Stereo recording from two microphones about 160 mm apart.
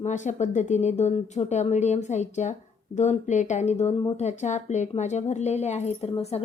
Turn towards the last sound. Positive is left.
turn(degrees=40)  # may be behind; listen again after turning